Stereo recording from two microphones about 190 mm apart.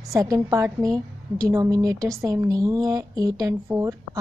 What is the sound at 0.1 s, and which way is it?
A woman's voice, 15° right (ahead or behind).